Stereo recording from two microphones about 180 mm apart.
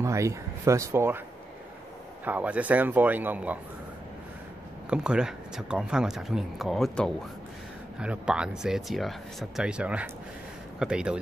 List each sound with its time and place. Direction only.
0.0 s a man's voice: 15° right (ahead or behind)
2.2 s a man's voice: 10° right (ahead or behind)
4.8 s speech: 5° right (ahead or behind)